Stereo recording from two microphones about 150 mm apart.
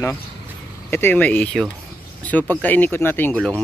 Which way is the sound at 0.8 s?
15° left (ahead or behind).